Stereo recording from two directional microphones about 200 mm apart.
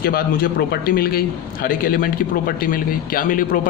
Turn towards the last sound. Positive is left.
turn(degrees=45)  # may be behind; listen again after turning